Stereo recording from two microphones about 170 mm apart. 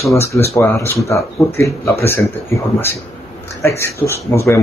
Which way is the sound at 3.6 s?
15° left (ahead or behind).